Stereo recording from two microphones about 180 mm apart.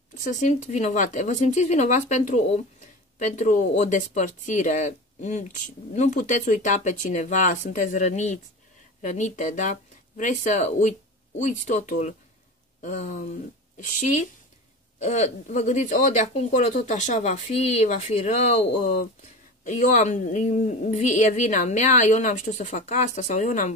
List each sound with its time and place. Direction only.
0.2 s a woman's voice: 45° left (ahead or behind)
13.9 s a woman's voice: 40° left (ahead or behind)